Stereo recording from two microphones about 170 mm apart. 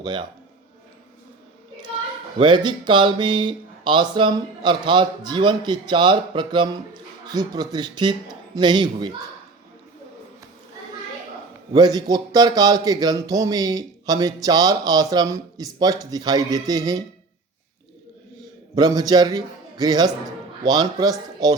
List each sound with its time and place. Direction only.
0.0 s speech: 25° right (ahead or behind)
2.4 s speech: 25° right (ahead or behind)
11.7 s speech: 25° right (ahead or behind)
18.7 s speech: 20° right (ahead or behind)